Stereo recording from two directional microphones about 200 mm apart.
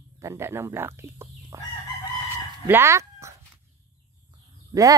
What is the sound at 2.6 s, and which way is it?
Speech, 15° right (ahead or behind).